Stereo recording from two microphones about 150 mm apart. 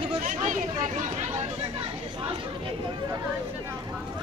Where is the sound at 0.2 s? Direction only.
60° right (ahead or behind).